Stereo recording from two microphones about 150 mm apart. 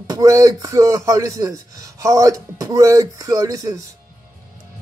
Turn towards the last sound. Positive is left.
turn(degrees=-25)  # may be behind; listen again after turning